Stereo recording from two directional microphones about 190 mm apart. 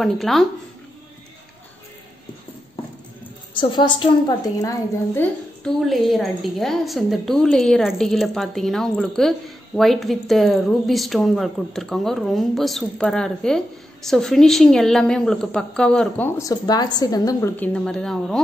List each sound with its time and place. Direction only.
0.0 s a woman's voice: centre (ahead or behind)
3.5 s a woman's voice: 25° left (ahead or behind)
4.6 s a woman's voice: 15° left (ahead or behind)